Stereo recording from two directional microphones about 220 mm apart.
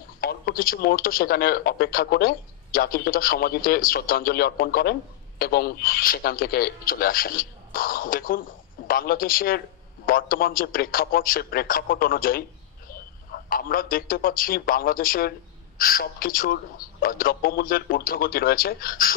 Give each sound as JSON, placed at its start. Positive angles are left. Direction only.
{"t": 0.2, "sound": "a man's voice", "side_deg": 45}